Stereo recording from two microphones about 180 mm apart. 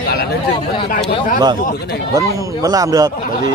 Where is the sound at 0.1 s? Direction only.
60° left (ahead or behind).